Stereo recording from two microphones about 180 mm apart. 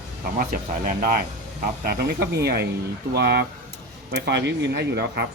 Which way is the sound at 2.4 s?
60° right (ahead or behind).